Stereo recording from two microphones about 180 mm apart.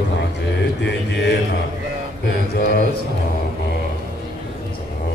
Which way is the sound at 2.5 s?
60° left (ahead or behind).